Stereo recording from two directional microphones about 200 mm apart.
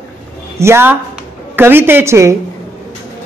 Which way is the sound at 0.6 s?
10° right (ahead or behind).